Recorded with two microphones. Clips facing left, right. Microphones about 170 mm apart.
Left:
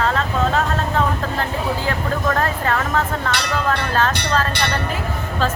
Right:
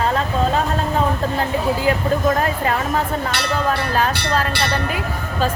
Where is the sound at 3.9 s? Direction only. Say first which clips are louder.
Even; 10° right (ahead or behind).